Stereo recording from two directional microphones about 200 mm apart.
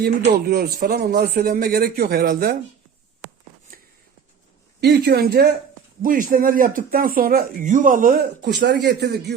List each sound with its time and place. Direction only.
0.4 s speech: 50° right (ahead or behind)
3.7 s a sound: 45° right (ahead or behind)
4.8 s speech: 55° right (ahead or behind)